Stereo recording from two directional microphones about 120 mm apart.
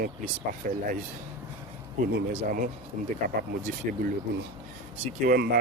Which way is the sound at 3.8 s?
90° right.